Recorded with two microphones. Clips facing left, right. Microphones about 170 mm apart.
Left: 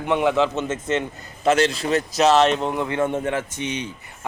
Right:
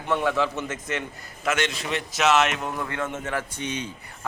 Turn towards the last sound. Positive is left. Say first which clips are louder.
# left 3 dB
turn(degrees=15)  # may be behind; listen again after turning